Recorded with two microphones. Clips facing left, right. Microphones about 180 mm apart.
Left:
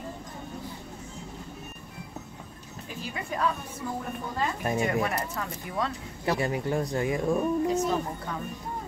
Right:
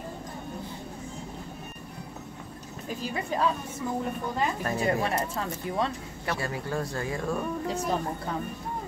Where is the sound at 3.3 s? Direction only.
30° right (ahead or behind).